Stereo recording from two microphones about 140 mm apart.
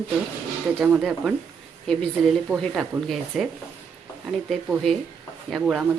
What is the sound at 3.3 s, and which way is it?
Speech, 5° right (ahead or behind).